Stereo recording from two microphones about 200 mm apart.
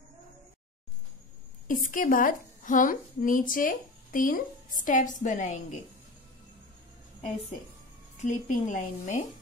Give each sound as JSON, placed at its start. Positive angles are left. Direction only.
{"t": 1.7, "sound": "a woman's voice", "side_deg": 40}
{"t": 8.2, "sound": "a woman's voice", "side_deg": 35}